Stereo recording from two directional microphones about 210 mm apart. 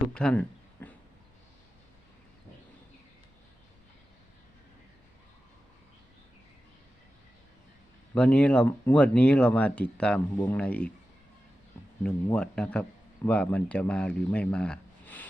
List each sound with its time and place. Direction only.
0.1 s a sound: 5° left (ahead or behind)
8.1 s speech: 5° left (ahead or behind)
10.3 s speech: 15° left (ahead or behind)
12.0 s speech: 5° left (ahead or behind)